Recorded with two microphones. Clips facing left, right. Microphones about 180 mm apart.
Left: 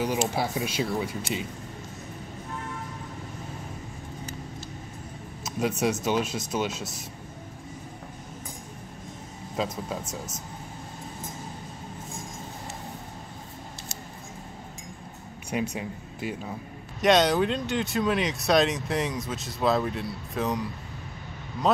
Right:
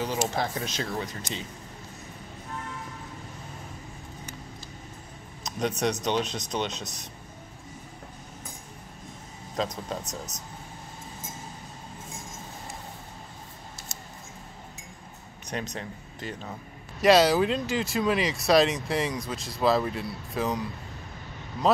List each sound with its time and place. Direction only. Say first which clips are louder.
0.3 s speech: left 2 dB; 10° left (ahead or behind)
5.4 s speech: left 1 dB; 5° left (ahead or behind)
9.6 s speech: even; 5° left (ahead or behind)
15.5 s speech: left 4 dB; 10° left (ahead or behind)
17.0 s speech: right 1 dB; 5° right (ahead or behind)